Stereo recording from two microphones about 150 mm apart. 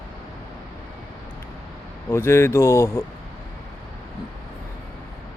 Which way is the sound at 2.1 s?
15° left (ahead or behind).